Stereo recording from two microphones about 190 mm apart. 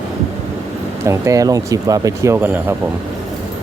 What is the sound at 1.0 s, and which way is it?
Speech, 15° right (ahead or behind).